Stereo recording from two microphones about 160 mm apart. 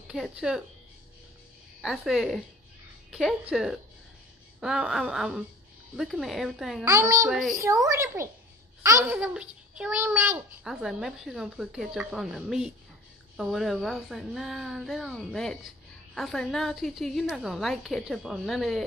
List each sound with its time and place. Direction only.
0.1 s a child's voice: 5° right (ahead or behind)
1.8 s a child's voice: 5° right (ahead or behind)
6.8 s a child's voice: 20° right (ahead or behind)
7.2 s a child's voice: centre (ahead or behind)
7.5 s a woman's voice: 20° right (ahead or behind); by 18.9 s centre (ahead or behind)